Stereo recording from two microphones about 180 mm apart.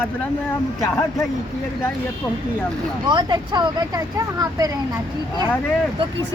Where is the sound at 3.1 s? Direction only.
25° right (ahead or behind).